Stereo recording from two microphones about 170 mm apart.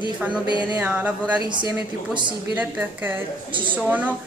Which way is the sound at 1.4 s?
25° right (ahead or behind).